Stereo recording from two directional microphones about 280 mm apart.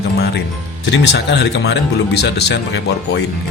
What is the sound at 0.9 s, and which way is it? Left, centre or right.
Speech, left.